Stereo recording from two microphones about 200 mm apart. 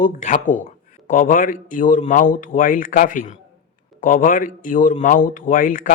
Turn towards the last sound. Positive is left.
turn(degrees=45)  # may be behind; listen again after turning